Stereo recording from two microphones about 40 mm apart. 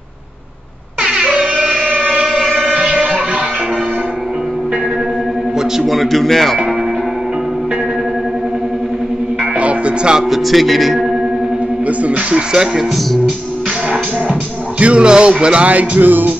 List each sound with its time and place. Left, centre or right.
1.0 s a sound: right
2.2 s music: centre
2.7 s music: centre
5.9 s speech: centre
9.6 s music: right
10.3 s speech: centre
11.8 s music: right
12.4 s speech: centre
14.8 s speech: right
15.7 s music: right